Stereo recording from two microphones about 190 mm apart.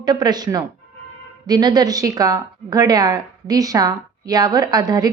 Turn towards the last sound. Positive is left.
turn(degrees=-20)  # may be behind; listen again after turning